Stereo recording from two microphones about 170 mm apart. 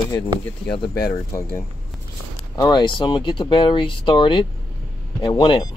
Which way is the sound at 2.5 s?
25° left (ahead or behind).